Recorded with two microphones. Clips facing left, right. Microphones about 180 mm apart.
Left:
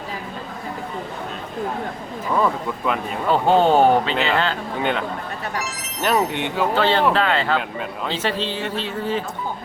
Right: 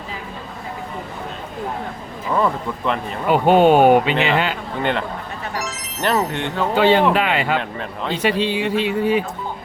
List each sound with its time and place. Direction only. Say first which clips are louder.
2.3 s speech: right 1 dB; 5° left (ahead or behind)
3.2 s speech: right 3 dB; 15° right (ahead or behind)
4.8 s speech: right 2 dB; 5° left (ahead or behind)
6.1 s speech: even; 15° left (ahead or behind)
6.7 s speech: right 4 dB; 15° right (ahead or behind)
7.6 s speech: right 1 dB; 5° left (ahead or behind)
8.1 s speech: right 6 dB; 15° right (ahead or behind)